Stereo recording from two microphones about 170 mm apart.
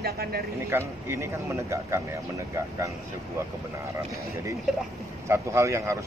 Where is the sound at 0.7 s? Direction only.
15° right (ahead or behind).